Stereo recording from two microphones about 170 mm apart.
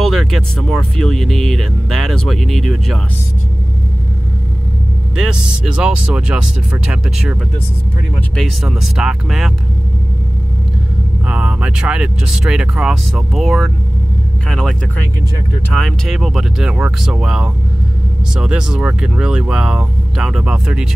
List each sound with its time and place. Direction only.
0.0 s speech: centre (ahead or behind)
5.1 s speech: 5° right (ahead or behind)
8.4 s speech: centre (ahead or behind)
11.2 s speech: 5° right (ahead or behind)